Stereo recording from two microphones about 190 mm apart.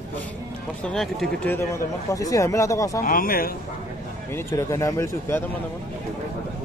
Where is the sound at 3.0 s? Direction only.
50° left (ahead or behind).